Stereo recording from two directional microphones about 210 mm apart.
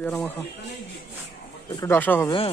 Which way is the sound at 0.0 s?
5° left (ahead or behind).